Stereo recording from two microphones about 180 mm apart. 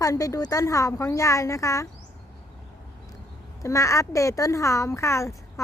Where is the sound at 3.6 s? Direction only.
15° left (ahead or behind).